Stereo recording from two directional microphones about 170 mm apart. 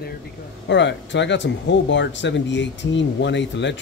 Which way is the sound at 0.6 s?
90° left.